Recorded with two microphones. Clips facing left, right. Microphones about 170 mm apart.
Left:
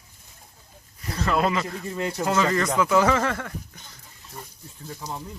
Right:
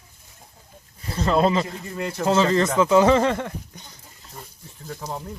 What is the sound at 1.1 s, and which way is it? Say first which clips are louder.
Speech: right 4 dB; 25° right (ahead or behind).